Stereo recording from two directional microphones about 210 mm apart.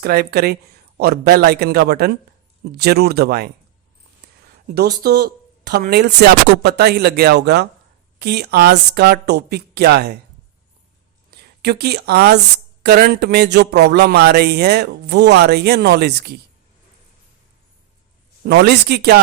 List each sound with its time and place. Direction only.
0.0 s speech: 45° right (ahead or behind)
4.7 s speech: 50° right (ahead or behind)
11.3 s a woman's voice: 50° right (ahead or behind)
18.4 s speech: 50° right (ahead or behind)